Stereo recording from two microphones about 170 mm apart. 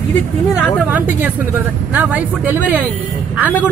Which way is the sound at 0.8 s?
10° right (ahead or behind).